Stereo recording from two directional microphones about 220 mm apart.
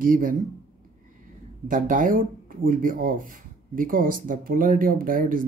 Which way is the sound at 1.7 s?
35° right (ahead or behind).